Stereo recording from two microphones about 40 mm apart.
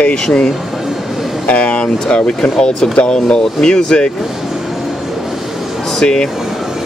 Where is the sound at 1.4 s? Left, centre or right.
Left.